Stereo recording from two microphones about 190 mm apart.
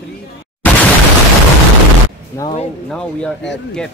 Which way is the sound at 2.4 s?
15° left (ahead or behind).